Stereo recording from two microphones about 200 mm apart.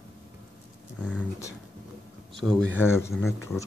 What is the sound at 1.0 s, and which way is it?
Speech, 5° left (ahead or behind).